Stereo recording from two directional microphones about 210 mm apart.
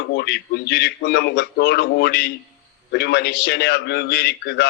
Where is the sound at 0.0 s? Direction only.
50° left (ahead or behind).